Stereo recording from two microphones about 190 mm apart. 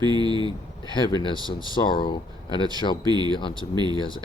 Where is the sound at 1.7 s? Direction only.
25° left (ahead or behind).